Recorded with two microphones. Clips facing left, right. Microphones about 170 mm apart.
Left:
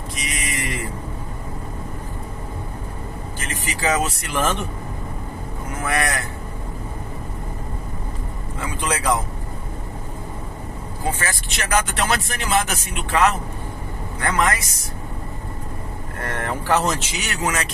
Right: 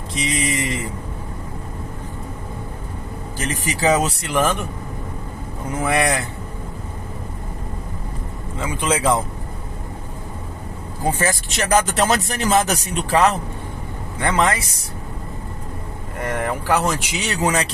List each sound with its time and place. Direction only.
0.1 s a sound: 25° right (ahead or behind)
3.3 s speech: 35° right (ahead or behind)
4.3 s speech: 15° right (ahead or behind)
5.8 s speech: 25° right (ahead or behind)
8.5 s speech: 20° right (ahead or behind)
11.2 s speech: 40° right (ahead or behind)
16.2 s speech: 15° right (ahead or behind)
17.1 s speech: 30° right (ahead or behind)